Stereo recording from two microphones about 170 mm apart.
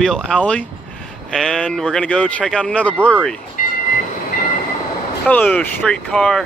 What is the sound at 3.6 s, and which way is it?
Vehicle, 55° left (ahead or behind).